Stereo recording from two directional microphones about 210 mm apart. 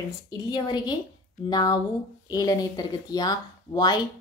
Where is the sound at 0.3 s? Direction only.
20° left (ahead or behind).